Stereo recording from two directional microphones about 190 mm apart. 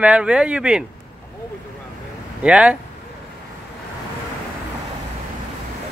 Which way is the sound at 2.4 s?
5° right (ahead or behind).